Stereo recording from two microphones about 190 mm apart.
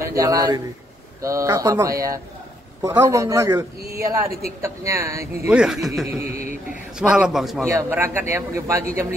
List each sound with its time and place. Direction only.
0.0 s a man's voice: 15° right (ahead or behind); by 6.0 s centre (ahead or behind)
6.0 s a sound: 35° left (ahead or behind)
7.0 s a man's voice: 5° right (ahead or behind)
7.6 s speech: 15° right (ahead or behind)